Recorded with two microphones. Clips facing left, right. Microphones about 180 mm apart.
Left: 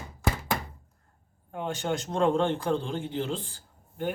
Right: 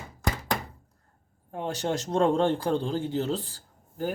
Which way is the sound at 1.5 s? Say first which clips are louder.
Right 1 dB; 35° right (ahead or behind).